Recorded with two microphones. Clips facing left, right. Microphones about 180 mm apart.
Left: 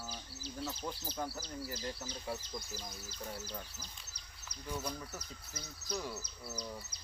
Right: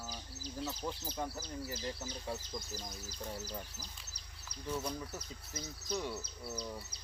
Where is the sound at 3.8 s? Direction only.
35° right (ahead or behind).